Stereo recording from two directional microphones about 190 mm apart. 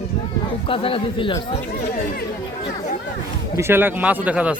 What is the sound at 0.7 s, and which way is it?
Speech, 30° left (ahead or behind).